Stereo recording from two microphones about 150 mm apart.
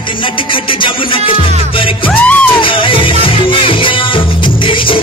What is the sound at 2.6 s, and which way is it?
Music, 35° left (ahead or behind).